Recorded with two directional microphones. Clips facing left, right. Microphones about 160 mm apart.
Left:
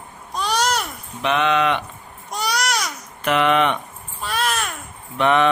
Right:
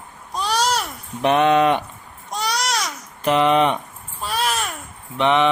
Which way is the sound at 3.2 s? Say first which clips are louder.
Right 2 dB; 30° right (ahead or behind).